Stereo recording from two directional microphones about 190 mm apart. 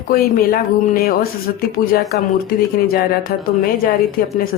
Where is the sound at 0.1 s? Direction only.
50° left (ahead or behind).